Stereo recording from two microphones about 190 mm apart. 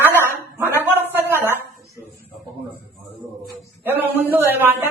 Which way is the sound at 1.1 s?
10° right (ahead or behind).